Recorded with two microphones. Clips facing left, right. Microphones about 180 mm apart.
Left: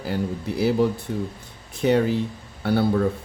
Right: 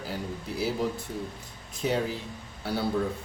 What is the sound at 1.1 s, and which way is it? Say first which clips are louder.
Speech: left 7 dB; 75° left (ahead or behind).